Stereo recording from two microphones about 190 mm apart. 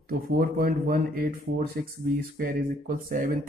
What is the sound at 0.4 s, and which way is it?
Speech, 50° right (ahead or behind).